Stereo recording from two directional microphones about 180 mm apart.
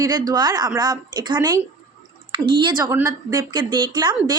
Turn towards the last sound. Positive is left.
turn(degrees=-25)  # may be behind; listen again after turning